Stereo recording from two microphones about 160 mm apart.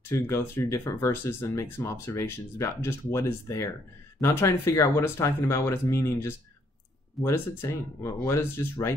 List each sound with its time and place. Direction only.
0.1 s speech: 20° left (ahead or behind)